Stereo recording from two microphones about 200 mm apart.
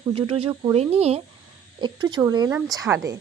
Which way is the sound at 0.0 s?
25° right (ahead or behind).